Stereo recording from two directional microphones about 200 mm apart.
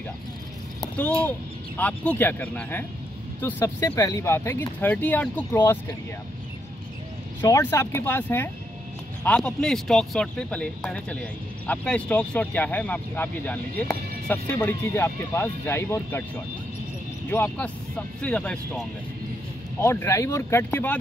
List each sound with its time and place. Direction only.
0.7 s a sound: 5° left (ahead or behind)
1.8 s speech: 5° left (ahead or behind)
7.4 s speech: 15° left (ahead or behind)
17.3 s speech: 10° left (ahead or behind)